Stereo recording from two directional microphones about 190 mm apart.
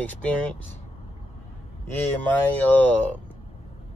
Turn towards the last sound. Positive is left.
turn(degrees=10)  # may be behind; listen again after turning